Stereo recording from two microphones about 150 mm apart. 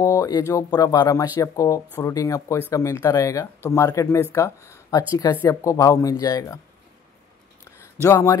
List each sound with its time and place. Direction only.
0.0 s speech: 25° left (ahead or behind)
8.0 s speech: 20° left (ahead or behind)